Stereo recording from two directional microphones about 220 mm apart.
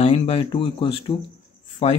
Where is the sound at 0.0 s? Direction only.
25° left (ahead or behind).